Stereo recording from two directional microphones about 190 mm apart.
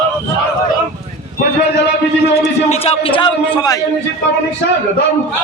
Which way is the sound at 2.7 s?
30° left (ahead or behind).